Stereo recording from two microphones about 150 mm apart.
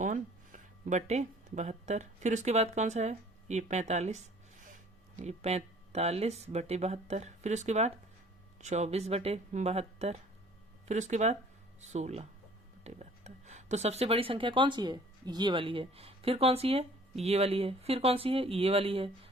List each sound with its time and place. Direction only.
0.0 s speech: 55° right (ahead or behind); by 19.3 s 40° right (ahead or behind)